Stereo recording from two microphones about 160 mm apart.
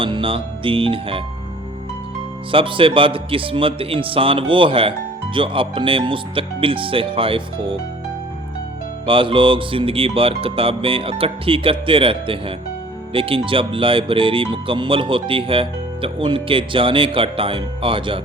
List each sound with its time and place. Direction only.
0.0 s speech: 35° right (ahead or behind)
2.5 s speech: 35° right (ahead or behind)
9.0 s speech: 30° right (ahead or behind)